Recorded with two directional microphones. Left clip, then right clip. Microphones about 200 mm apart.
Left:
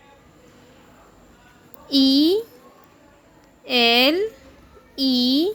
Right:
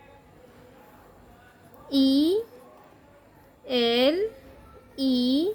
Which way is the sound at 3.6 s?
20° left (ahead or behind).